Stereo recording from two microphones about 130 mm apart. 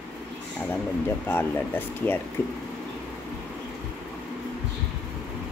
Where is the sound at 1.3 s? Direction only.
15° left (ahead or behind).